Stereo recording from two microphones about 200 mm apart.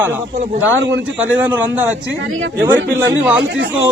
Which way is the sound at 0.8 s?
65° right (ahead or behind).